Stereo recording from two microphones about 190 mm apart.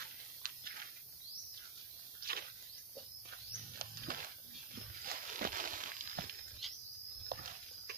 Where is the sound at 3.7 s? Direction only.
50° right (ahead or behind).